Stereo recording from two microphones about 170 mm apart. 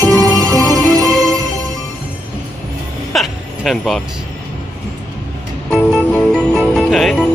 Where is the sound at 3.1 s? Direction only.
Centre (ahead or behind).